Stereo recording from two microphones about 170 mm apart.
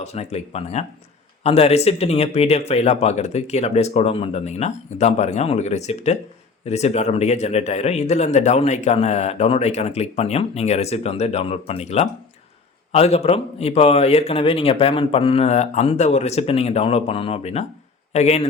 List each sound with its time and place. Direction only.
0.0 s speech: 40° left (ahead or behind)